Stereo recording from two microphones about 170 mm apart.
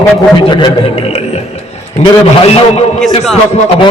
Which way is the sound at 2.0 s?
35° left (ahead or behind).